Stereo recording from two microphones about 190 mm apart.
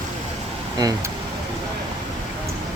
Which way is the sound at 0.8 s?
20° right (ahead or behind).